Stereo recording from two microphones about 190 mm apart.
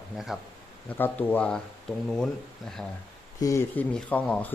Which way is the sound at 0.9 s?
10° left (ahead or behind).